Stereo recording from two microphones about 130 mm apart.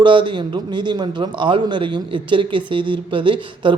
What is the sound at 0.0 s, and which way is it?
A man's voice, 40° right (ahead or behind).